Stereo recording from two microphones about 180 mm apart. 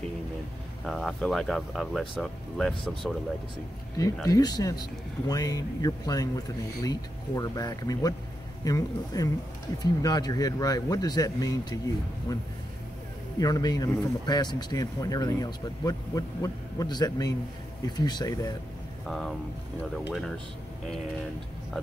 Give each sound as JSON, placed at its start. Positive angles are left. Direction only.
{"t": 0.8, "sound": "speech", "side_deg": 0}
{"t": 4.0, "sound": "speech", "side_deg": 20}
{"t": 19.0, "sound": "speech", "side_deg": 0}